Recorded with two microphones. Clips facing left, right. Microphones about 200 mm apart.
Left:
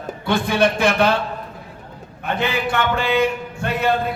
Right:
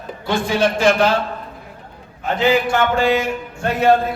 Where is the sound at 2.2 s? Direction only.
60° left (ahead or behind).